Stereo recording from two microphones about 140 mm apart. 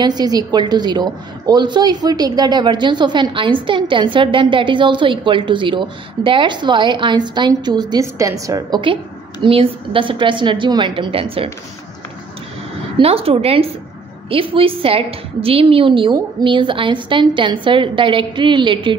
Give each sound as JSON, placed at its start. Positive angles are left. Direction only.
{"t": 0.0, "sound": "a woman's voice", "side_deg": -30}
{"t": 9.4, "sound": "a woman's voice", "side_deg": -40}
{"t": 12.9, "sound": "a woman's voice", "side_deg": -45}